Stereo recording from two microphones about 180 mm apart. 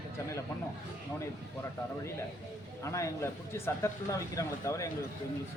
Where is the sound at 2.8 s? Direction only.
15° left (ahead or behind).